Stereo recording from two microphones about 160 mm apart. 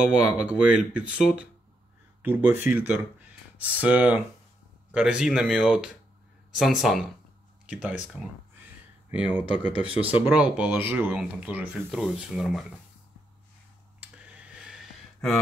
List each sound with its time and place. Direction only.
0.1 s speech: 5° right (ahead or behind)
9.1 s speech: 10° right (ahead or behind)
13.9 s a sound: 10° right (ahead or behind)